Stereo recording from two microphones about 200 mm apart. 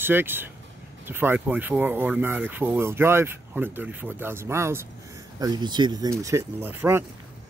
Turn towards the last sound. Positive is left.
turn(degrees=-10)  # may be behind; listen again after turning